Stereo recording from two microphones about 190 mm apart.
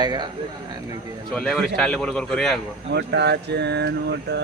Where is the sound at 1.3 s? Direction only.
5° left (ahead or behind).